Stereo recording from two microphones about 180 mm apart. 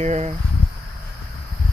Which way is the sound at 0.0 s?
40° right (ahead or behind).